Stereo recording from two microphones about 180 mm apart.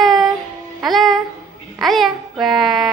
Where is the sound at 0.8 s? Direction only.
Centre (ahead or behind).